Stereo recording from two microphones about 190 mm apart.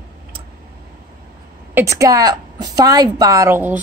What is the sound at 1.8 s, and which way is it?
Speech, 15° right (ahead or behind).